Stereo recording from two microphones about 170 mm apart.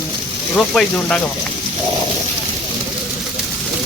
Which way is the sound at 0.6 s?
5° left (ahead or behind).